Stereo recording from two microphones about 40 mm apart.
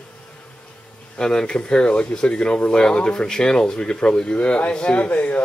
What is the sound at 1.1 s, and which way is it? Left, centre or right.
Speech, centre.